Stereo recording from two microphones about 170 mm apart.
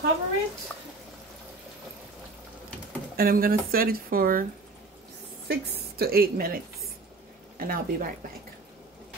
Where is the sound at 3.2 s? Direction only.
60° right (ahead or behind).